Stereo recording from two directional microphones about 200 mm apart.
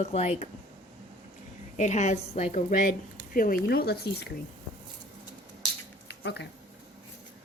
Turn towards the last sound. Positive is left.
turn(degrees=60)  # may be behind; listen again after turning